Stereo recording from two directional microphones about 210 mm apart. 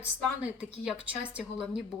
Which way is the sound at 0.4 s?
5° right (ahead or behind).